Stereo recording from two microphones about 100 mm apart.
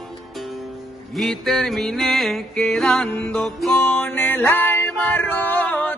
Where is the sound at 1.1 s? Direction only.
Centre (ahead or behind).